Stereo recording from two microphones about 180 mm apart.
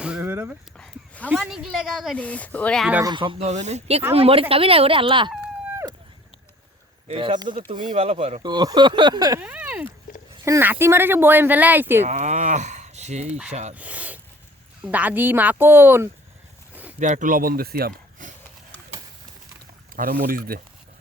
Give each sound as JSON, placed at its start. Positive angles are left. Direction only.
{"t": 0.0, "sound": "a sound", "side_deg": -5}
{"t": 0.8, "sound": "a sound", "side_deg": 10}
{"t": 1.3, "sound": "speech", "side_deg": -5}
{"t": 3.0, "sound": "speech", "side_deg": -25}
{"t": 7.1, "sound": "speech", "side_deg": -30}
{"t": 9.4, "sound": "a sound", "side_deg": -5}
{"t": 10.4, "sound": "speech", "side_deg": -15}
{"t": 12.0, "sound": "speech", "side_deg": -40}
{"t": 13.7, "sound": "speech", "side_deg": -10}
{"t": 17.0, "sound": "speech", "side_deg": -45}
{"t": 20.0, "sound": "speech", "side_deg": -55}